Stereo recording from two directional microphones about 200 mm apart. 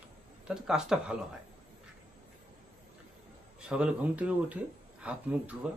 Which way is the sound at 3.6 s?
5° right (ahead or behind).